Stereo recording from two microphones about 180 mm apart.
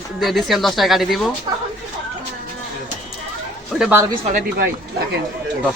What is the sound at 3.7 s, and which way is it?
Speech, 5° right (ahead or behind).